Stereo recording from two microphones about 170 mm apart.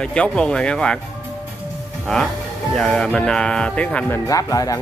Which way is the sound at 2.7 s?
Centre (ahead or behind).